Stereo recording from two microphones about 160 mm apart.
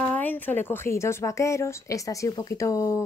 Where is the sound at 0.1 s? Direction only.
10° left (ahead or behind).